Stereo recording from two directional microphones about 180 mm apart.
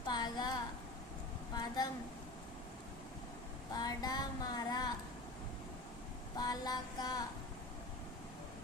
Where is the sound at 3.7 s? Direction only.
20° left (ahead or behind).